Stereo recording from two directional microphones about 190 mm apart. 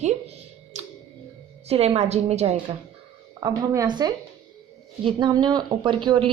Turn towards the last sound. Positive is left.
turn(degrees=-25)  # may be behind; listen again after turning